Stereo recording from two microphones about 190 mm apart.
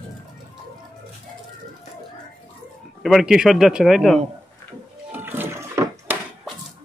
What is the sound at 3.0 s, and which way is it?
Speech, centre (ahead or behind).